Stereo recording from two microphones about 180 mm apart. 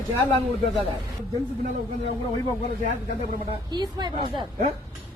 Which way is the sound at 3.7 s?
25° right (ahead or behind).